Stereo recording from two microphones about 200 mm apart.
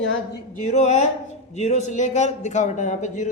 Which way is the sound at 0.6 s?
35° left (ahead or behind).